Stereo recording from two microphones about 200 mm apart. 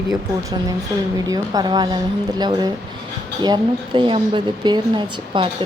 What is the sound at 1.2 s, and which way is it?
Speech, 20° right (ahead or behind).